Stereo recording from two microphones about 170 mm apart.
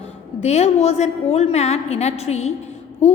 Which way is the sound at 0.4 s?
40° left (ahead or behind).